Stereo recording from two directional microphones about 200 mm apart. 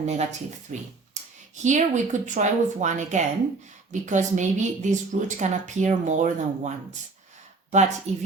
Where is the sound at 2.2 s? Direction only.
40° right (ahead or behind).